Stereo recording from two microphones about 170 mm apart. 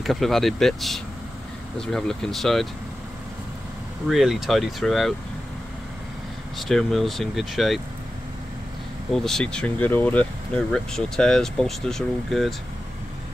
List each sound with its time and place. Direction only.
0.0 s speech: centre (ahead or behind)
4.1 s speech: centre (ahead or behind)
6.7 s speech: centre (ahead or behind)
9.1 s speech: 5° left (ahead or behind)